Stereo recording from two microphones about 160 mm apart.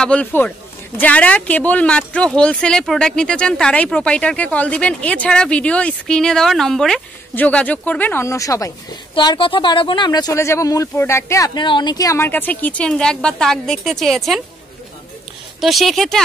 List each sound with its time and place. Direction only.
0.0 s speech: 10° left (ahead or behind)
15.6 s speech: centre (ahead or behind)